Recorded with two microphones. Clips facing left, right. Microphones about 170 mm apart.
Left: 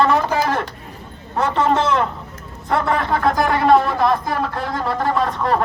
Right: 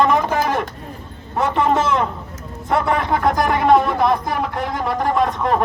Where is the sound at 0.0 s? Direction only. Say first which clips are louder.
Even; 15° right (ahead or behind).